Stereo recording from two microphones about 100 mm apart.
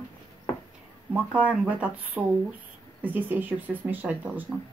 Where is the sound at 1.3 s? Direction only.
15° right (ahead or behind).